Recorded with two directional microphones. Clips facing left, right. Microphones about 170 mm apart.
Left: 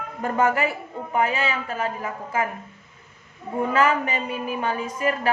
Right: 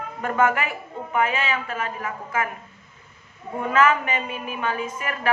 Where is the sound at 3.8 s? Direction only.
35° left (ahead or behind).